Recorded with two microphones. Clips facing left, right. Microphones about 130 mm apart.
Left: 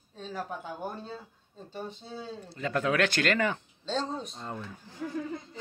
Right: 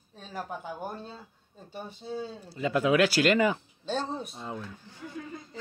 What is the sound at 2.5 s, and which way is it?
Speech, 10° right (ahead or behind).